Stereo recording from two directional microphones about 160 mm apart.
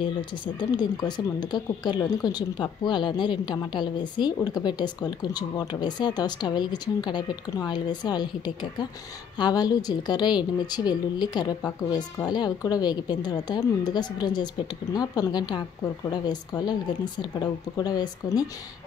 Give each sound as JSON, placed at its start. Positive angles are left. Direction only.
{"t": 0.6, "sound": "speech", "side_deg": 25}